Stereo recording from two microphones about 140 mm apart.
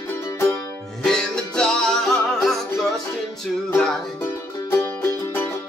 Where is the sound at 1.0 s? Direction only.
5° left (ahead or behind).